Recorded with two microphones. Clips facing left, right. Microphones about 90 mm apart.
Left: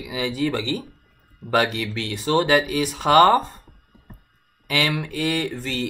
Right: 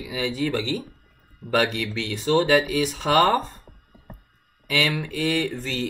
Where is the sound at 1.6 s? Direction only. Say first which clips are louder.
Left 1 dB; 60° left (ahead or behind).